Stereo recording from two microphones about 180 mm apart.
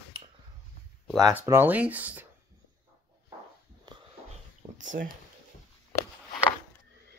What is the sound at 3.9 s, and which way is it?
Sniff, 20° right (ahead or behind).